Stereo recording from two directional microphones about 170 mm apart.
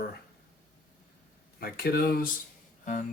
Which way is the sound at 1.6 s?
65° left (ahead or behind).